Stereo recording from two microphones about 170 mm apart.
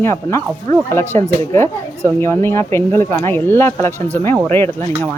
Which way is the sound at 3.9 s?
15° right (ahead or behind).